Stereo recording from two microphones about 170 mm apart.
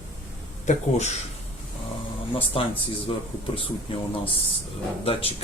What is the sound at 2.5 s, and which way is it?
Speech, 35° left (ahead or behind).